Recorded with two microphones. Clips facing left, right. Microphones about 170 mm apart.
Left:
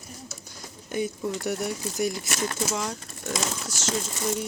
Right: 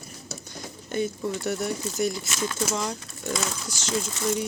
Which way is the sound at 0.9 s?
10° left (ahead or behind).